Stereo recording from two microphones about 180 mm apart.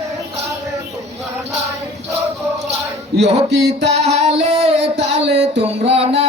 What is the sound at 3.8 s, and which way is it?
Singing, 35° right (ahead or behind).